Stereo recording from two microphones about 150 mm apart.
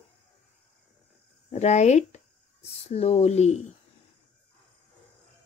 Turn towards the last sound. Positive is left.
turn(degrees=45)  # may be behind; listen again after turning